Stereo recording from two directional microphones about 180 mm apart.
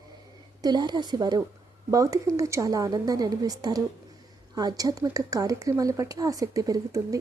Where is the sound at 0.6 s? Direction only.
25° right (ahead or behind).